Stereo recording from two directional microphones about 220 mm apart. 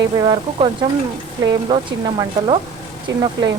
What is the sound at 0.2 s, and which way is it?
Speech, 20° right (ahead or behind).